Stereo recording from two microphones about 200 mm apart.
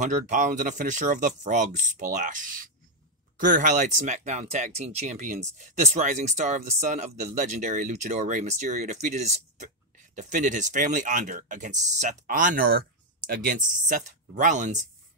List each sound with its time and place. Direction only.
0.0 s speech: 40° right (ahead or behind)